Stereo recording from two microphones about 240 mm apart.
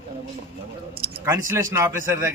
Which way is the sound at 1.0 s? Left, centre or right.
Right.